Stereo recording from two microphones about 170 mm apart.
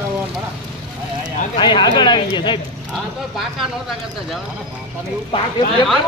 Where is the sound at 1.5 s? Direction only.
25° left (ahead or behind).